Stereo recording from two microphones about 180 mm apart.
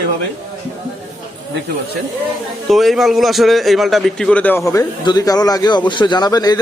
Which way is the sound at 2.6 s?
Centre (ahead or behind).